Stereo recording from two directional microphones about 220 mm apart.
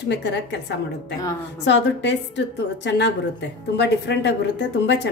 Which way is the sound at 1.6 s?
55° left (ahead or behind).